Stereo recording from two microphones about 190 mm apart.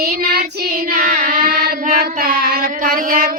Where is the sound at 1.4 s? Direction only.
55° right (ahead or behind).